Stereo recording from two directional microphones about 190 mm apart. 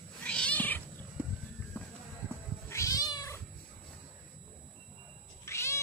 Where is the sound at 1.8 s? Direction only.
10° left (ahead or behind).